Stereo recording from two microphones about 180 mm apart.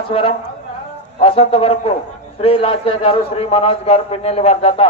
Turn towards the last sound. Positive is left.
turn(degrees=30)  # may be behind; listen again after turning